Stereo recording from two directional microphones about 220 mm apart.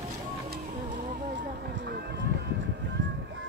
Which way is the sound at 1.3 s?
50° right (ahead or behind).